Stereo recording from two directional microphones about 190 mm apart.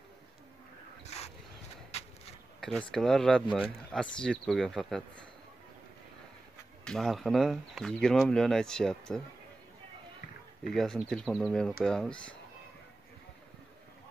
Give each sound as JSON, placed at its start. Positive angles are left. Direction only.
{"t": 1.0, "sound": "dog", "side_deg": 35}
{"t": 2.6, "sound": "speech", "side_deg": 5}
{"t": 6.8, "sound": "speech", "side_deg": 0}
{"t": 10.7, "sound": "speech", "side_deg": 0}